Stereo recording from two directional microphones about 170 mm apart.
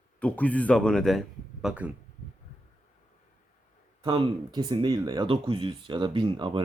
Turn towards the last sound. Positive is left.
turn(degrees=-30)  # may be behind; listen again after turning